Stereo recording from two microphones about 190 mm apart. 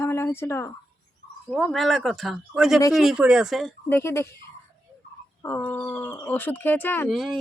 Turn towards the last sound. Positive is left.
turn(degrees=0)  # may be behind; listen again after turning